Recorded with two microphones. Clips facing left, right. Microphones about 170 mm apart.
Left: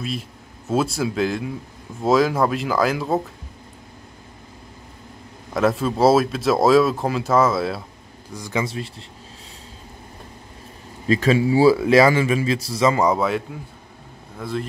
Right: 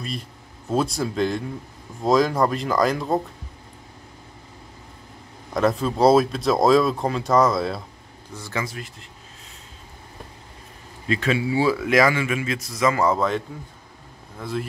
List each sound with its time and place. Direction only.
0.7 s speech: 5° left (ahead or behind)
5.5 s speech: 5° left (ahead or behind)
8.3 s a man's voice: 15° left (ahead or behind)
8.6 s speech: 30° left (ahead or behind)
11.1 s a man's voice: 40° left (ahead or behind)
13.0 s a man's voice: 10° left (ahead or behind)
14.4 s speech: centre (ahead or behind)